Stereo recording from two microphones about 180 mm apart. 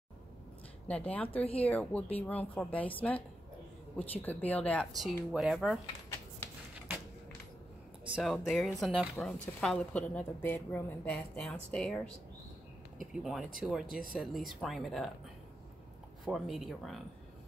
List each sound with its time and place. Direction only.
1.1 s speech: 10° left (ahead or behind)
1.4 s speech: 35° left (ahead or behind)
1.7 s speech: 10° left (ahead or behind)
8.2 s a woman's voice: centre (ahead or behind)
13.0 s a woman's voice: 5° right (ahead or behind)
16.3 s a woman's voice: centre (ahead or behind)